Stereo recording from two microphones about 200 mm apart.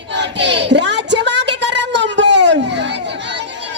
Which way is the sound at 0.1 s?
60° right (ahead or behind).